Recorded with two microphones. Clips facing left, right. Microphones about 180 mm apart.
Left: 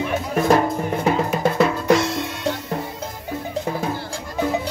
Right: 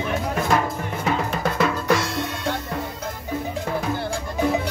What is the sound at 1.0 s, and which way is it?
Percussion, 25° left (ahead or behind).